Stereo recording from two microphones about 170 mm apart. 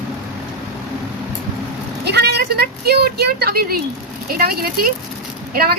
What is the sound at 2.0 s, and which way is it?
Speech, 70° right (ahead or behind).